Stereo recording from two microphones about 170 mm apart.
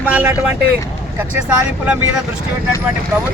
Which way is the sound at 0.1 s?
10° right (ahead or behind).